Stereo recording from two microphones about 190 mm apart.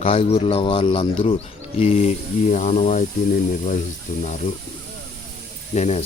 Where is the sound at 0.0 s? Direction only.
30° left (ahead or behind).